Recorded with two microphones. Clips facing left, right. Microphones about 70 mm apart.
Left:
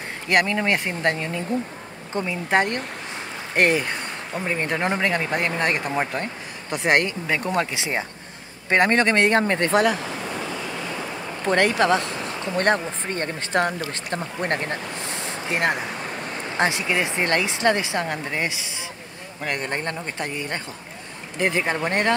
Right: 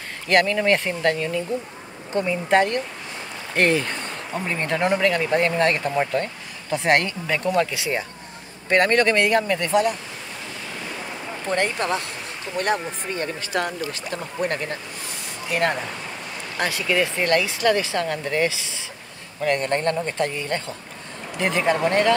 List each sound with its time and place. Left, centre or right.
0.3 s speech: centre
1.0 s speech: left
3.8 s speech: centre; by 9.8 s left
11.4 s speech: left
13.1 s speech: left
15.2 s speech: left